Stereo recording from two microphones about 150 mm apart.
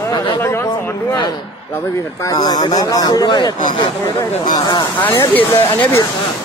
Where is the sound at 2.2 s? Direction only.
25° left (ahead or behind).